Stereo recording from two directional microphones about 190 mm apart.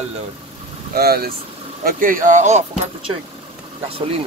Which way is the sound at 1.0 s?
55° right (ahead or behind).